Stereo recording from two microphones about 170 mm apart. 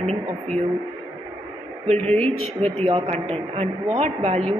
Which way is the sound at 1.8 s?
40° right (ahead or behind).